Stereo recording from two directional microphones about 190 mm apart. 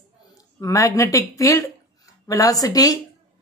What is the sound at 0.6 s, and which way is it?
Speech, 15° left (ahead or behind).